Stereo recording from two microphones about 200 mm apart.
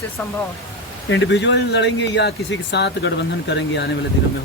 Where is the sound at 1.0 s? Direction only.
65° left (ahead or behind).